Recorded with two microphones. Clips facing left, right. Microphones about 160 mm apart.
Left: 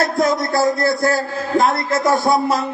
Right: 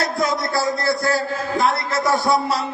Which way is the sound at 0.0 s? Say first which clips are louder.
Left 4 dB; 50° left (ahead or behind).